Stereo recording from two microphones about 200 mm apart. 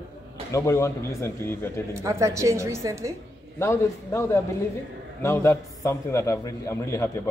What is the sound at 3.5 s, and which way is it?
A man's voice, 15° left (ahead or behind).